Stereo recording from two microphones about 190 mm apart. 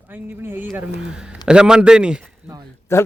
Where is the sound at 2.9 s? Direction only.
15° left (ahead or behind).